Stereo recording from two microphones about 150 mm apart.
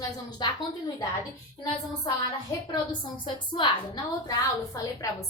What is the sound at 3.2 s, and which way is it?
A woman's voice, 30° left (ahead or behind).